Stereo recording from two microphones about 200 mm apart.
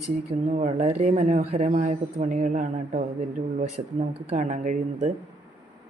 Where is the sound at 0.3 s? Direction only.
35° right (ahead or behind).